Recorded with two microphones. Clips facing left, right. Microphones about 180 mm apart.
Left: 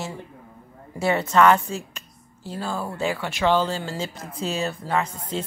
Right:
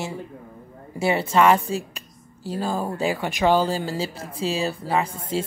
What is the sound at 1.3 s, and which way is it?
Speech, 10° right (ahead or behind).